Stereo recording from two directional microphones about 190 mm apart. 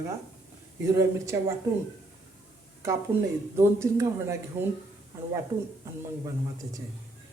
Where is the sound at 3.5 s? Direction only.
15° right (ahead or behind).